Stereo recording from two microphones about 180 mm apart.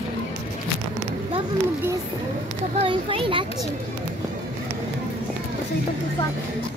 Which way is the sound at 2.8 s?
30° right (ahead or behind).